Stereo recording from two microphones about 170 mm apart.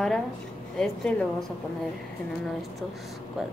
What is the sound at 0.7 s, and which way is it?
Speech, 5° left (ahead or behind).